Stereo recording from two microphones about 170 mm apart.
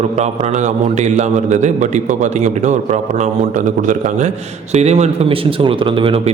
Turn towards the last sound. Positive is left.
turn(degrees=-30)  # may be behind; listen again after turning